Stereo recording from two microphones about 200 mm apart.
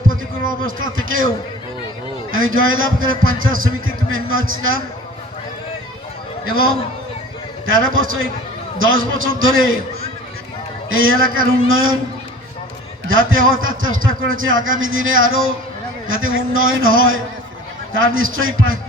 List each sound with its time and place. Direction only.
0.6 s a man's voice: 85° right
2.3 s a man's voice: 90° right
6.4 s a man's voice: 90° right
7.7 s a man's voice: 90° right
10.8 s a man's voice: 90° right
13.1 s a man's voice: 90° right